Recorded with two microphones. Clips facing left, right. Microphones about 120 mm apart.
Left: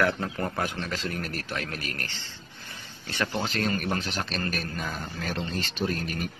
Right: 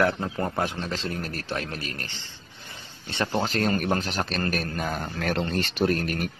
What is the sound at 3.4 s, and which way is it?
A man's voice, 40° right (ahead or behind).